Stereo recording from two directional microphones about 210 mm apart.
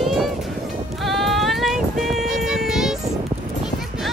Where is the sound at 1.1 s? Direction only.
Centre (ahead or behind).